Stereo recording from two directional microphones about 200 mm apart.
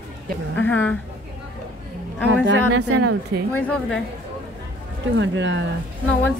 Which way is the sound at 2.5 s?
75° right (ahead or behind).